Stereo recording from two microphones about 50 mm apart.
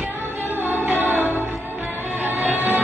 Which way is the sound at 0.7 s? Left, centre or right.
Right.